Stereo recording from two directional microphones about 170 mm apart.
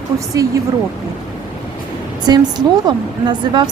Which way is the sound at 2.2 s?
25° right (ahead or behind).